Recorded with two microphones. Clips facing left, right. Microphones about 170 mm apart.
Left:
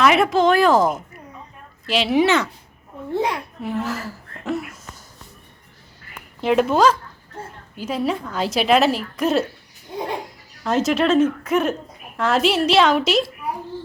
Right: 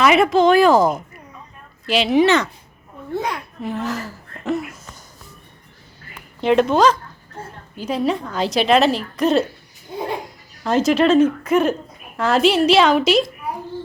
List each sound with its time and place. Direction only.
0.0 s a woman's voice: centre (ahead or behind)
3.1 s a child's voice: 30° left (ahead or behind)
3.6 s a woman's voice: 5° left (ahead or behind)
6.4 s a woman's voice: 5° left (ahead or behind)
10.6 s a woman's voice: centre (ahead or behind)